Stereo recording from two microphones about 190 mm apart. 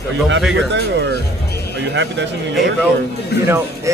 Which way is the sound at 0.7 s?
65° right (ahead or behind).